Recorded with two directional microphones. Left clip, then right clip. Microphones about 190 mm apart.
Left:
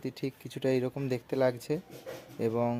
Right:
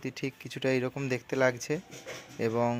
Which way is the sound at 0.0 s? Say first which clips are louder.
Right 1 dB; centre (ahead or behind).